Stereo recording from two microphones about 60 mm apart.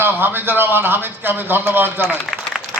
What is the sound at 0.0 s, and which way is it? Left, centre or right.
A man's voice, right.